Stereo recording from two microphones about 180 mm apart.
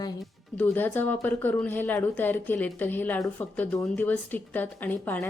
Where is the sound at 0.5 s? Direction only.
10° left (ahead or behind).